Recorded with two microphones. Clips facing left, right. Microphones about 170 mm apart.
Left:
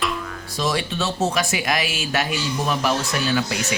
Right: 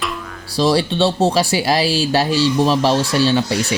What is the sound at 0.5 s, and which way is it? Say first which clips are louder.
Speech: right 8 dB; 35° right (ahead or behind).